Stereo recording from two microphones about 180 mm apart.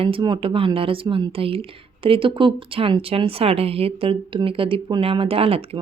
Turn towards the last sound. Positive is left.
turn(degrees=-30)  # may be behind; listen again after turning